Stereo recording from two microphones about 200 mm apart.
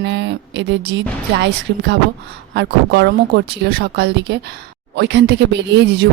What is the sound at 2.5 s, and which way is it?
Speech, 60° right (ahead or behind).